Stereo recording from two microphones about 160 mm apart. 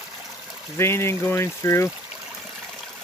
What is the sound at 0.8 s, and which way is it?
Speech, 15° left (ahead or behind).